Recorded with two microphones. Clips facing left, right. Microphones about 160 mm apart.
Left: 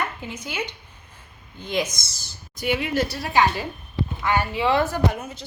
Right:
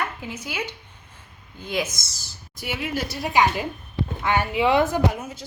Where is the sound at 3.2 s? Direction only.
15° right (ahead or behind).